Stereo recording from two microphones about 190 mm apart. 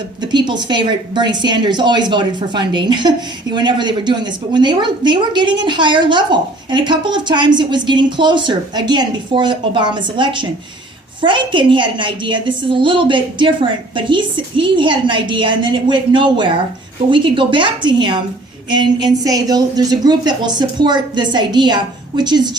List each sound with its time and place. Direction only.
0.2 s a woman's voice: 25° right (ahead or behind)